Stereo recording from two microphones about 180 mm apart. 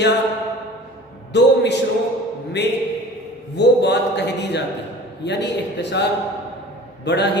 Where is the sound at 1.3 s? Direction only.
70° left (ahead or behind).